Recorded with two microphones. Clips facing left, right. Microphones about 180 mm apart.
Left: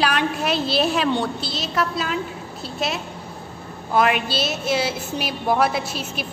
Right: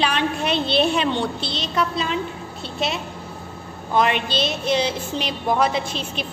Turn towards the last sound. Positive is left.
turn(degrees=5)  # may be behind; listen again after turning